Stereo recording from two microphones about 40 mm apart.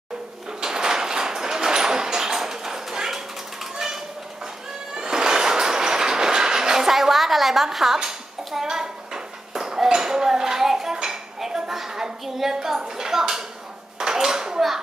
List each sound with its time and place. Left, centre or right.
0.5 s sliding door: centre
3.7 s a sound: centre
4.9 s train: centre
8.6 s dishes: centre
11.3 s a sound: centre
13.9 s dishes: centre